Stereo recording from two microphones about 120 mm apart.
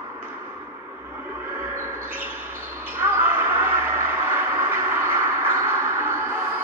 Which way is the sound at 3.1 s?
20° right (ahead or behind).